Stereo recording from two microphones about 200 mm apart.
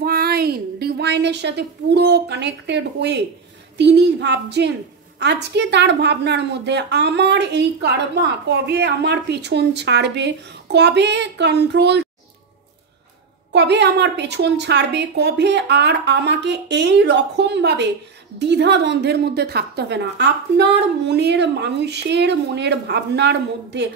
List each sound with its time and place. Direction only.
0.0 s a woman's voice: 50° right (ahead or behind)
13.5 s a woman's voice: 60° right (ahead or behind)